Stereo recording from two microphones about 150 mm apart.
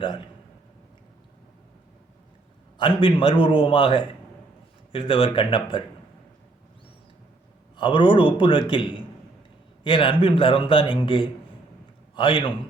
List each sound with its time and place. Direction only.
0.0 s a man's voice: 30° left (ahead or behind)
2.7 s a man's voice: 35° left (ahead or behind)
7.8 s a man's voice: 35° left (ahead or behind)